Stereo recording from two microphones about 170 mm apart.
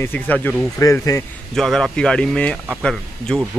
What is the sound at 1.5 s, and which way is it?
Speech, centre (ahead or behind).